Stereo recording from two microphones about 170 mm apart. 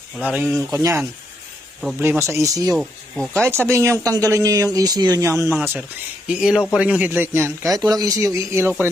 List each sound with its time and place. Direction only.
0.3 s a man's voice: 10° right (ahead or behind)
2.7 s speech: centre (ahead or behind)
3.4 s a man's voice: 15° right (ahead or behind)